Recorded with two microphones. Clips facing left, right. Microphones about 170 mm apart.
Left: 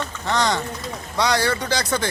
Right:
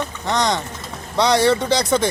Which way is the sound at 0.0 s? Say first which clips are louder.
Right 2 dB; 20° right (ahead or behind).